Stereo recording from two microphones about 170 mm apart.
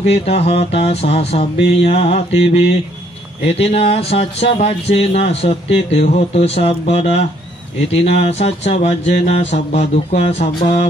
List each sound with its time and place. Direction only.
0.0 s speech: 35° left (ahead or behind)
8.3 s speech: 40° left (ahead or behind)